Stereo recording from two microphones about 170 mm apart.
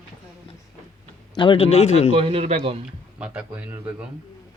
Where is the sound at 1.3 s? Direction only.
30° left (ahead or behind).